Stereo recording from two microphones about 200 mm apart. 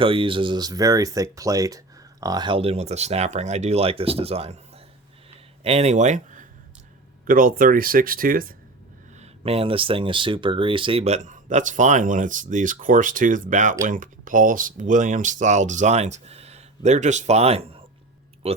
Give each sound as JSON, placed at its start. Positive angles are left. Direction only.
{"t": 0.0, "sound": "speech", "side_deg": -25}
{"t": 5.6, "sound": "speech", "side_deg": -30}
{"t": 9.1, "sound": "speech", "side_deg": -30}